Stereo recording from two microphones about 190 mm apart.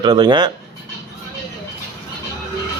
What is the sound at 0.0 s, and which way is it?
Speech, 25° right (ahead or behind).